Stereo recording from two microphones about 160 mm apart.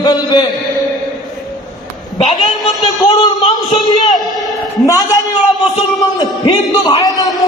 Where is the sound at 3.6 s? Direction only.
Centre (ahead or behind).